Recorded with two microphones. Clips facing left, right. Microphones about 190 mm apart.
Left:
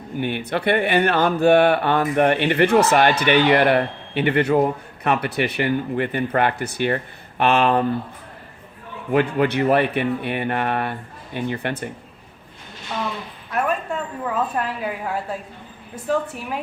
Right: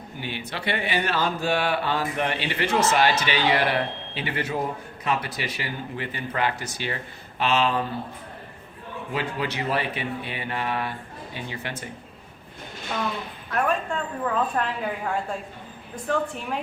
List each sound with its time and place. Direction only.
0.2 s speech: 55° left (ahead or behind)
9.1 s speech: 60° left (ahead or behind)
13.5 s a woman's voice: 5° left (ahead or behind)